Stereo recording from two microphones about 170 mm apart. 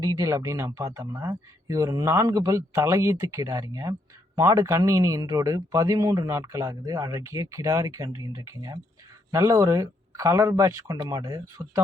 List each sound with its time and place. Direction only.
0.0 s speech: 20° right (ahead or behind)
9.3 s speech: 20° right (ahead or behind)